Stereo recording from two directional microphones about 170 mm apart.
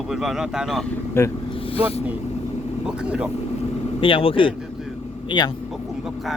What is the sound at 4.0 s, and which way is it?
A man's voice, 30° left (ahead or behind).